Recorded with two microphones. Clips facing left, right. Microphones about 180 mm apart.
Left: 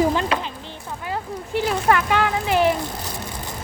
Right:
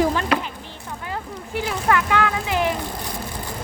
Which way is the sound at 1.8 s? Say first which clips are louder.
Right 1 dB; 25° left (ahead or behind).